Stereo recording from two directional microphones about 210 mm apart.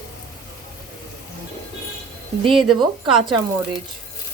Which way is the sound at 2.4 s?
25° right (ahead or behind).